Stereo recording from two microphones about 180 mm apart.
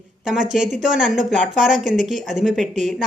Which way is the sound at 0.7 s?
5° right (ahead or behind).